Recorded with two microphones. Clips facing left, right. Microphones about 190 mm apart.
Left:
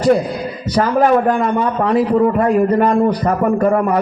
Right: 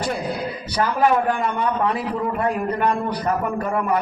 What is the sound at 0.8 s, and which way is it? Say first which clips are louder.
A man's voice: left 6 dB; 45° left (ahead or behind).